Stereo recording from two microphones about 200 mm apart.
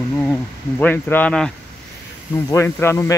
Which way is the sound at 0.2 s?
5° left (ahead or behind).